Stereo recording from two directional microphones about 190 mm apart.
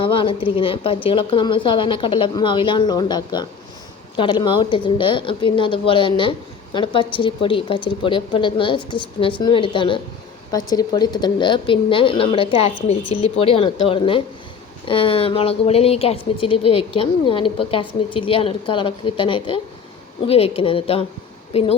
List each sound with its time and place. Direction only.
0.0 s a woman's voice: 25° left (ahead or behind)